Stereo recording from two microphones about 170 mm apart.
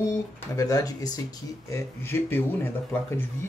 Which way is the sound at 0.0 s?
20° left (ahead or behind).